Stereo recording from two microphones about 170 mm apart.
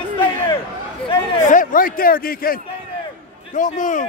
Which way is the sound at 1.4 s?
50° left (ahead or behind).